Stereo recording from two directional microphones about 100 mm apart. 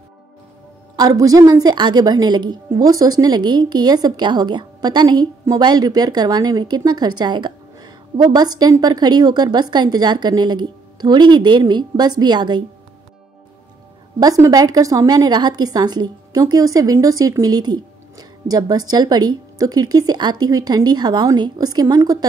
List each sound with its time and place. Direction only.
0.9 s speech: 40° right (ahead or behind)
14.2 s a woman's voice: 40° right (ahead or behind)